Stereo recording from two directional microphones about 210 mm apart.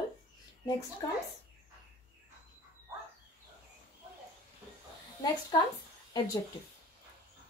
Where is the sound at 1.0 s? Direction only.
20° left (ahead or behind).